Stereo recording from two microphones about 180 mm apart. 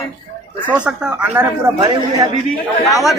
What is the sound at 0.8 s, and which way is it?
Speech, 5° right (ahead or behind).